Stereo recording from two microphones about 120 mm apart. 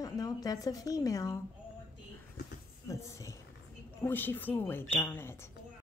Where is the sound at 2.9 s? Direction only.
25° left (ahead or behind).